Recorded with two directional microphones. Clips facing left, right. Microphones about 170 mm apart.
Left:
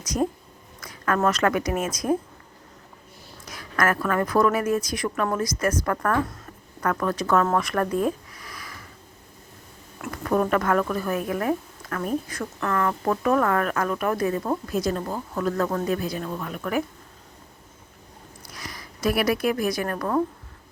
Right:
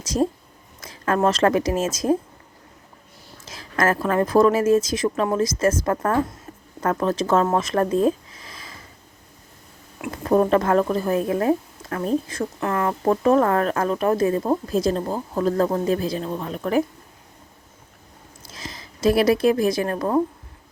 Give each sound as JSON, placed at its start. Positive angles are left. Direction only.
{"t": 0.1, "sound": "a woman's voice", "side_deg": -25}
{"t": 3.4, "sound": "a woman's voice", "side_deg": -25}
{"t": 7.5, "sound": "a sound", "side_deg": -25}
{"t": 10.1, "sound": "a woman's voice", "side_deg": -30}
{"t": 18.4, "sound": "a woman's voice", "side_deg": -25}